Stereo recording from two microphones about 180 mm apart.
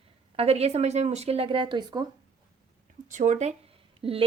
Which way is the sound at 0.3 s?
35° right (ahead or behind).